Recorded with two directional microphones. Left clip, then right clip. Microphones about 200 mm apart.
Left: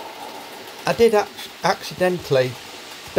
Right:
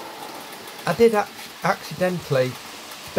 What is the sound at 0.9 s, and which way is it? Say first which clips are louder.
Speech: left 2 dB; 20° left (ahead or behind).